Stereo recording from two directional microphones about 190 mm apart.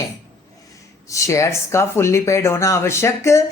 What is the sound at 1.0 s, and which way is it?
Speech, 15° left (ahead or behind).